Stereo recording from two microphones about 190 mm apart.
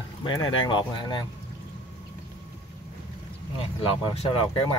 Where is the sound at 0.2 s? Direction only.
25° left (ahead or behind).